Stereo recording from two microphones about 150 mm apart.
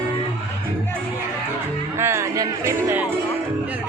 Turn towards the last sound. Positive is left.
turn(degrees=-15)  # may be behind; listen again after turning